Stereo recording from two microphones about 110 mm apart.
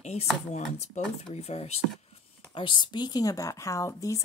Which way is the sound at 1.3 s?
75° left (ahead or behind).